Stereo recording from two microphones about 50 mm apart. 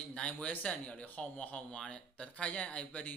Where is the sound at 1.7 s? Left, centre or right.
Centre.